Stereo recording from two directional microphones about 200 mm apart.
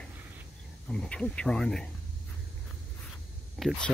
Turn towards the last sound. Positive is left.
turn(degrees=0)  # may be behind; listen again after turning